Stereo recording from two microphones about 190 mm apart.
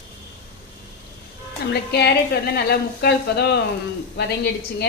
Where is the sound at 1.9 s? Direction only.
60° left (ahead or behind).